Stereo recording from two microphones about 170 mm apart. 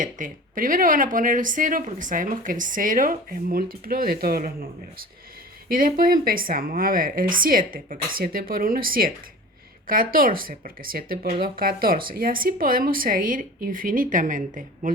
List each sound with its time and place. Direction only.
0.0 s speech: 50° right (ahead or behind)
5.6 s speech: 55° right (ahead or behind)